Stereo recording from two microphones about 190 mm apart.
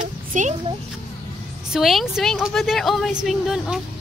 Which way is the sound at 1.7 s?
Centre (ahead or behind).